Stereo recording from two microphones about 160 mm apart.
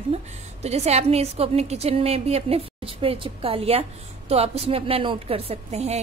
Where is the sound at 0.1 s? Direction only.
40° right (ahead or behind).